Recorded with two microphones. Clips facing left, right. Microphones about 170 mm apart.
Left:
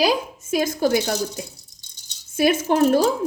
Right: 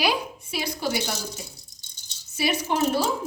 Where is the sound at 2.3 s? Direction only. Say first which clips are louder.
Left 7 dB; 50° left (ahead or behind).